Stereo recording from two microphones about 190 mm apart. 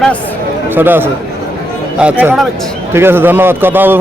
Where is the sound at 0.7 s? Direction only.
10° right (ahead or behind).